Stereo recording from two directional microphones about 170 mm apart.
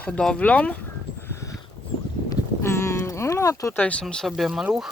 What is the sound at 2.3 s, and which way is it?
Speech, 15° left (ahead or behind).